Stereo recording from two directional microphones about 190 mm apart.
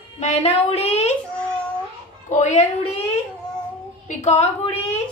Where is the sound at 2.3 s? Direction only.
40° left (ahead or behind).